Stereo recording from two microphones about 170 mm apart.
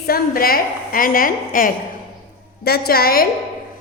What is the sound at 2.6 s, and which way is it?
Speech, 65° left (ahead or behind).